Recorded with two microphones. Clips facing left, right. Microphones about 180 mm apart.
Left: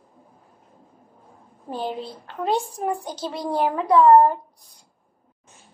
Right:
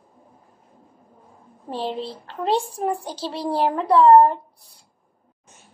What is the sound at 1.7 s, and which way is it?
A woman's voice, 30° right (ahead or behind).